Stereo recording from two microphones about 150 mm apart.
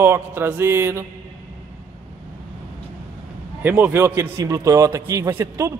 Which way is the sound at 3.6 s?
15° right (ahead or behind).